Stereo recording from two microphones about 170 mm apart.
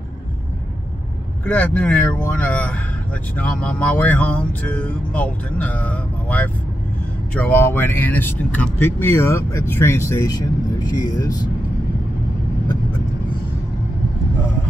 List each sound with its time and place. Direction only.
1.4 s music: 5° left (ahead or behind)
11.0 s speech: 20° left (ahead or behind)